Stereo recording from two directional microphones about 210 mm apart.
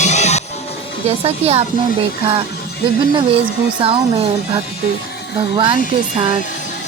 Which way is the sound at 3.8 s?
25° right (ahead or behind).